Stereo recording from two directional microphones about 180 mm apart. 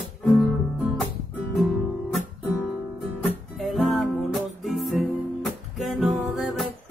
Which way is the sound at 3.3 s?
Centre (ahead or behind).